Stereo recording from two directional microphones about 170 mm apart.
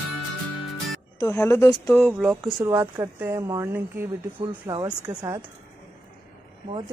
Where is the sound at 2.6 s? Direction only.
15° right (ahead or behind).